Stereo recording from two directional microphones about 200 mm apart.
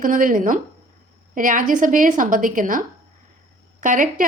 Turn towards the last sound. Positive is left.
turn(degrees=-40)  # may be behind; listen again after turning